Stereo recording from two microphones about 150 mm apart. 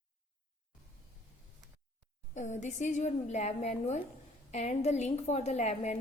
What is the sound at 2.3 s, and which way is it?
A woman's voice, 50° left (ahead or behind).